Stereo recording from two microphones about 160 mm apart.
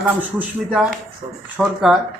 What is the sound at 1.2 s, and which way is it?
Speech, 50° right (ahead or behind).